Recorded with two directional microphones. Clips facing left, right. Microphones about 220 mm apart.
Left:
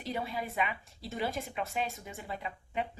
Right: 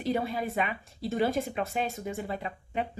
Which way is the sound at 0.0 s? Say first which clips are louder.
Right 7 dB; 45° right (ahead or behind).